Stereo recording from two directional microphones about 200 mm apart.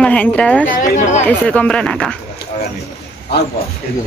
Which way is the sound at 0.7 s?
40° left (ahead or behind).